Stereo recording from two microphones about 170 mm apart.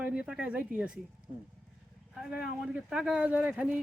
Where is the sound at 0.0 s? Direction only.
5° right (ahead or behind).